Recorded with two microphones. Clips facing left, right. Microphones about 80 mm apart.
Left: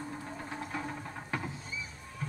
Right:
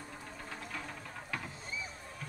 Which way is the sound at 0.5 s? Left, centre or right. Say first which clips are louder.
Left 5 dB; left.